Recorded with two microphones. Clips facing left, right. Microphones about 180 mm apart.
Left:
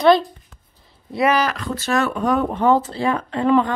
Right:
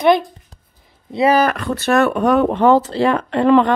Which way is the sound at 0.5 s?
35° right (ahead or behind).